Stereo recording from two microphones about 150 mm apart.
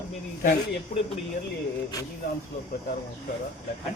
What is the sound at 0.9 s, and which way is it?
Speech, 65° left (ahead or behind).